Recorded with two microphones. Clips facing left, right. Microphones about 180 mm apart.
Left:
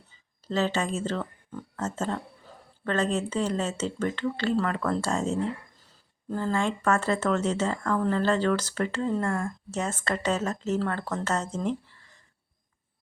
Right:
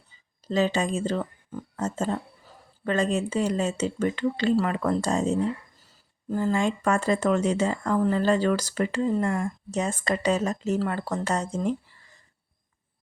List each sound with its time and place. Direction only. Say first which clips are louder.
0.4 s speech: right 3 dB; 15° right (ahead or behind)